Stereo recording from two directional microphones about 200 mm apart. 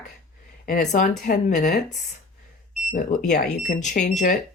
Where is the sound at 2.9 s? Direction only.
40° left (ahead or behind).